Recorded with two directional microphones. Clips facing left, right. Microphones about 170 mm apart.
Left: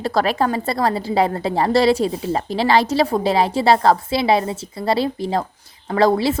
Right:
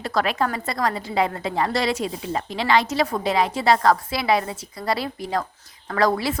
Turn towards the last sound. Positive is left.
turn(degrees=30)  # may be behind; listen again after turning